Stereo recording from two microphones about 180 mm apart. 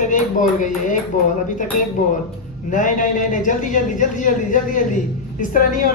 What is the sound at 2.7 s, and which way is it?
A man's voice, 45° left (ahead or behind).